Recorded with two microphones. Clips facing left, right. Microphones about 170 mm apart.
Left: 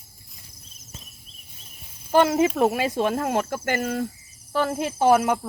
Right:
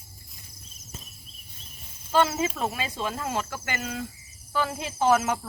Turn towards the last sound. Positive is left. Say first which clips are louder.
# left 4 dB
turn(degrees=60)  # may be behind; listen again after turning